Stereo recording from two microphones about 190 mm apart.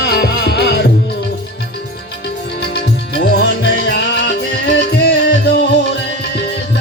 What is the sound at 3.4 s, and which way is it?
Music, 60° left (ahead or behind).